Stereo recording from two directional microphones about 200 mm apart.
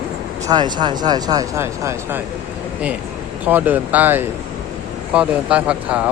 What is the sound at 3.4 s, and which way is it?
Speech, 10° right (ahead or behind).